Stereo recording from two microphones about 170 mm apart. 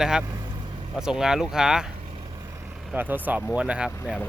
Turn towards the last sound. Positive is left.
turn(degrees=-5)  # may be behind; listen again after turning